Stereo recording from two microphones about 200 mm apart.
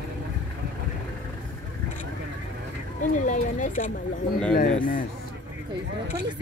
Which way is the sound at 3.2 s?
40° left (ahead or behind).